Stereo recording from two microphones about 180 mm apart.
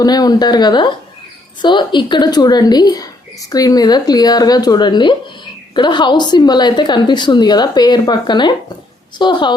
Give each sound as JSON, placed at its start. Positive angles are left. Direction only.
{"t": 0.0, "sound": "a woman's voice", "side_deg": 20}